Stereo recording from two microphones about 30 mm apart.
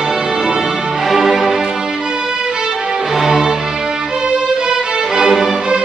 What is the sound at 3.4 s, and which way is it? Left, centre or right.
Music, right.